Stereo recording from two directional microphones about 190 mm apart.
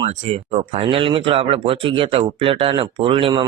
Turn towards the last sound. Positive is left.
turn(degrees=-30)  # may be behind; listen again after turning